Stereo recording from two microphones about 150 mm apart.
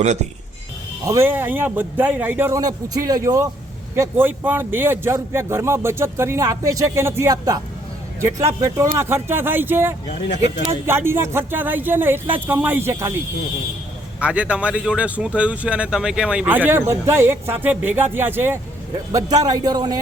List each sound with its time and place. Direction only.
1.0 s speech: 20° right (ahead or behind)
2.6 s speech: 25° right (ahead or behind)
8.6 s speech: 20° right (ahead or behind)
14.2 s speech: 10° right (ahead or behind)
19.1 s speech: 25° right (ahead or behind)